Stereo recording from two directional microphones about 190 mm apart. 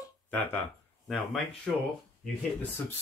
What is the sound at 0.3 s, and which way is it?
Speech, 10° left (ahead or behind).